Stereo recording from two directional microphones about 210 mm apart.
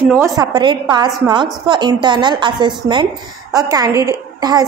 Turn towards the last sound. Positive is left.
turn(degrees=-15)  # may be behind; listen again after turning